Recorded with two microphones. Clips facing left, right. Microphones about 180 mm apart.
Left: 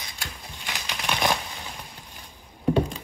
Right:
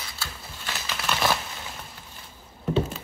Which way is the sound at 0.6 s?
15° left (ahead or behind).